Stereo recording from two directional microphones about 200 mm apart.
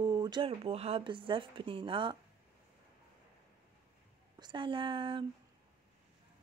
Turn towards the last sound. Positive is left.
turn(degrees=-25)  # may be behind; listen again after turning